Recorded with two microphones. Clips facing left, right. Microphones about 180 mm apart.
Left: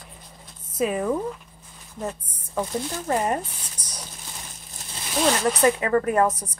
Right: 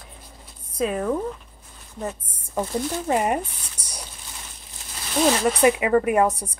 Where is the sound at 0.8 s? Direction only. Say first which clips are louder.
Even; 5° left (ahead or behind).